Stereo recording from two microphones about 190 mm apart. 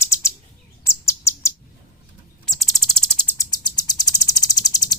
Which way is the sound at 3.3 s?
20° left (ahead or behind).